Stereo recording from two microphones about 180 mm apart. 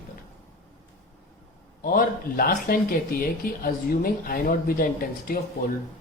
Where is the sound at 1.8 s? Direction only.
50° left (ahead or behind).